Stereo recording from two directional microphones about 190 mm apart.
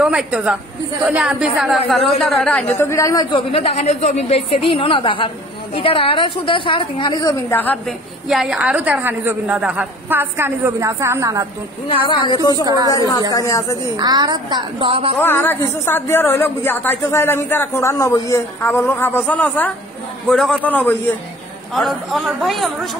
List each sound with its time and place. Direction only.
0.0 s a woman's voice: 5° right (ahead or behind)
8.3 s a woman's voice: centre (ahead or behind)
11.9 s a woman's voice: 25° left (ahead or behind)
12.6 s a woman's voice: 20° right (ahead or behind)
12.9 s a woman's voice: 20° left (ahead or behind)
13.9 s a woman's voice: 20° right (ahead or behind)
15.1 s a woman's voice: 10° left (ahead or behind)